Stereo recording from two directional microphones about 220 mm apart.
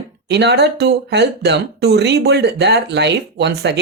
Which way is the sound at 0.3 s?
50° right (ahead or behind).